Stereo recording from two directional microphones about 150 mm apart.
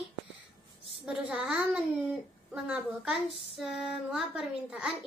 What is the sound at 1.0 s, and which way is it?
A child's voice, 5° right (ahead or behind).